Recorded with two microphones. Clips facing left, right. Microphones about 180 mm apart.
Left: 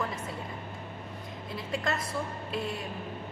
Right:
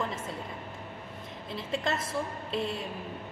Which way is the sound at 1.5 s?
25° right (ahead or behind).